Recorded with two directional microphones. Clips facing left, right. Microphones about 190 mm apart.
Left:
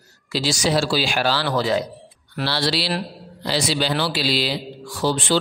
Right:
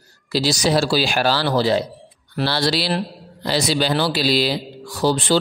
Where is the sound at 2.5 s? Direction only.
45° right (ahead or behind).